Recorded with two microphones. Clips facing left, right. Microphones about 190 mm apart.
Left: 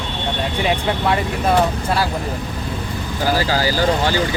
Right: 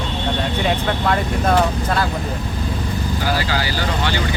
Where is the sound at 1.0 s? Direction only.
5° left (ahead or behind).